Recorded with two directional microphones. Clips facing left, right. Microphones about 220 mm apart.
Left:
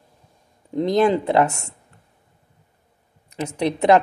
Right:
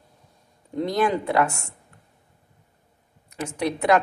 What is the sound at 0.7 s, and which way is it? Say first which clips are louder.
Speech: left 5 dB; 20° left (ahead or behind).